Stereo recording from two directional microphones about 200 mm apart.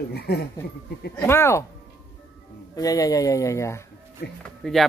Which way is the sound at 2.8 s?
15° left (ahead or behind).